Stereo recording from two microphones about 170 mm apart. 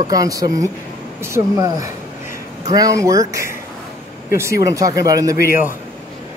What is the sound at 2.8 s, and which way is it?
Speech, 20° right (ahead or behind).